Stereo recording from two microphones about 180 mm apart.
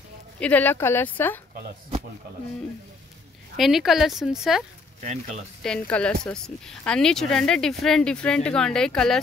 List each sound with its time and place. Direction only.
0.4 s speech: 10° left (ahead or behind)
3.5 s speech: centre (ahead or behind)
5.0 s speech: 40° right (ahead or behind)
5.6 s speech: 5° left (ahead or behind)